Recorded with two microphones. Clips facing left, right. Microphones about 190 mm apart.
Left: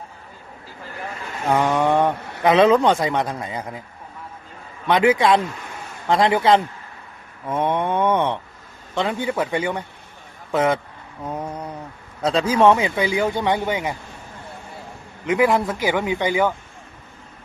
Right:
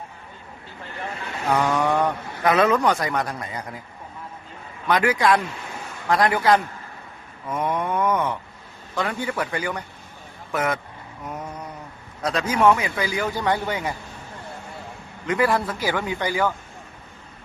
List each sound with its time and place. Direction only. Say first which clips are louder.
1.5 s speech: left 3 dB; 20° left (ahead or behind)
4.9 s speech: left 3 dB; 25° left (ahead or behind)
11.3 s a sound: left 5 dB; 30° left (ahead or behind)
12.2 s speech: left 3 dB; 30° left (ahead or behind)
15.3 s speech: left 3 dB; 15° left (ahead or behind)